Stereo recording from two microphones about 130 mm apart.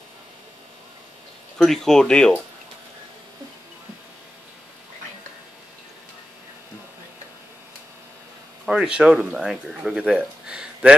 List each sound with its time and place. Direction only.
1.6 s speech: 5° left (ahead or behind)
8.6 s speech: 5° right (ahead or behind)